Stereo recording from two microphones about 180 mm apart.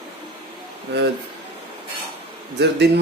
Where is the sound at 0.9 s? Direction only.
70° right (ahead or behind).